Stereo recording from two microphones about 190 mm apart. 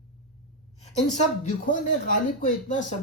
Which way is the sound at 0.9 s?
40° left (ahead or behind).